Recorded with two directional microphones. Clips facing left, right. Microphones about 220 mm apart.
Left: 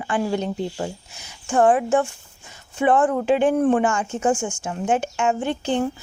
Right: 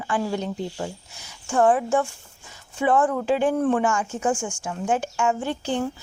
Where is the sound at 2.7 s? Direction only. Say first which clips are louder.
Left 2 dB; 55° left (ahead or behind).